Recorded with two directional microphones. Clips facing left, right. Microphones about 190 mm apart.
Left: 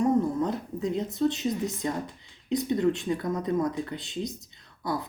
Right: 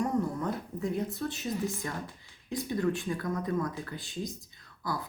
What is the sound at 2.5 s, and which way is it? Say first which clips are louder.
Speech: left 5 dB; 20° left (ahead or behind).